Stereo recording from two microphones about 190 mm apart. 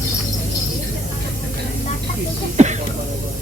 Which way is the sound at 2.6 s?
35° right (ahead or behind).